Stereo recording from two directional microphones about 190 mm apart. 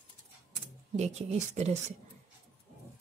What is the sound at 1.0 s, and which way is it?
Speech, 35° right (ahead or behind).